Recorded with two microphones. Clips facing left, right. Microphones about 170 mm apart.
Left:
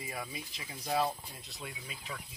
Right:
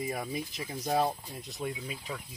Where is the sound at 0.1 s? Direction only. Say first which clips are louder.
Right 7 dB; 45° right (ahead or behind).